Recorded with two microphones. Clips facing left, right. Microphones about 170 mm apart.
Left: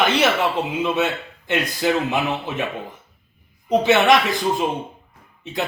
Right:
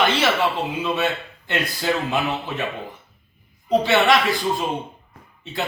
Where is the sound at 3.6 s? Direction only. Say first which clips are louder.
Left 2 dB; 20° left (ahead or behind).